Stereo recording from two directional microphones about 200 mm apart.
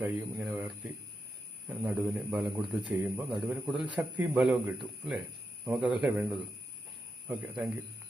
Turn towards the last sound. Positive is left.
turn(degrees=-5)  # may be behind; listen again after turning